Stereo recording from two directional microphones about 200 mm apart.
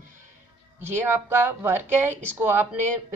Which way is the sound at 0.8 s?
10° right (ahead or behind).